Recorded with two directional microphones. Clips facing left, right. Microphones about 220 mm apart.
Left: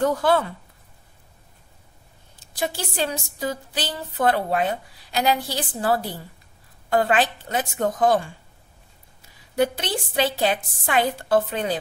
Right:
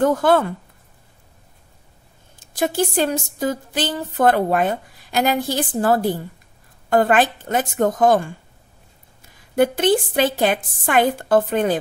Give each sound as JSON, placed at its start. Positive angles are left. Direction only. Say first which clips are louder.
{"t": 0.0, "sound": "speech", "louder": "right 4 dB", "side_deg": -50}
{"t": 2.5, "sound": "speech", "louder": "right 8 dB", "side_deg": -50}
{"t": 9.6, "sound": "speech", "louder": "right 7 dB", "side_deg": -50}